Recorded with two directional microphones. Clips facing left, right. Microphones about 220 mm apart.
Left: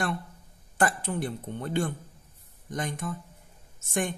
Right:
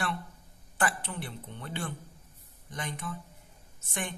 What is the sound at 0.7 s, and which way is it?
Speech, 45° left (ahead or behind).